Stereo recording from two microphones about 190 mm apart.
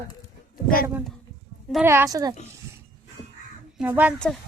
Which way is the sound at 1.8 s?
15° right (ahead or behind).